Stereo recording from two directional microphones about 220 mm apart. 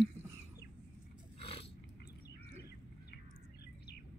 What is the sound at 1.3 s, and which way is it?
Biting, 25° left (ahead or behind).